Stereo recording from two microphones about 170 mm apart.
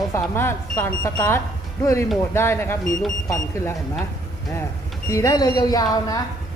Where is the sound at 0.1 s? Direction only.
15° left (ahead or behind).